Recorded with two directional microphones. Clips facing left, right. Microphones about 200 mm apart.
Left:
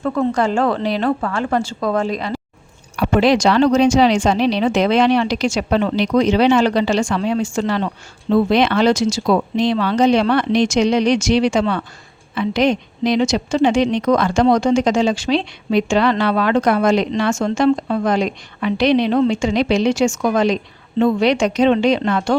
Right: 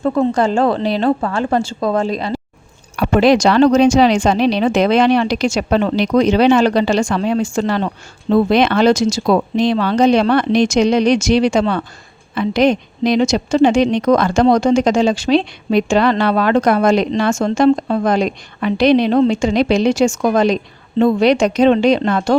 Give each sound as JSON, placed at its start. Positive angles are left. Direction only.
{"t": 0.0, "sound": "a woman's voice", "side_deg": -30}
{"t": 2.9, "sound": "a woman's voice", "side_deg": -45}